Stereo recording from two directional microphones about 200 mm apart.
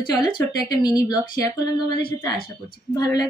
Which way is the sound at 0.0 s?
20° left (ahead or behind).